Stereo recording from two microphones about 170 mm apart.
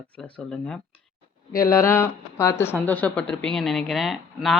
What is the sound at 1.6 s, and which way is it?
Speech, 15° left (ahead or behind).